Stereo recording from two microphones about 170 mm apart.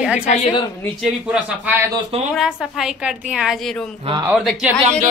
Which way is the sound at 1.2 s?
5° right (ahead or behind).